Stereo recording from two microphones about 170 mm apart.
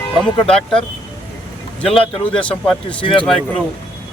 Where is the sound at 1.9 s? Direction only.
35° left (ahead or behind).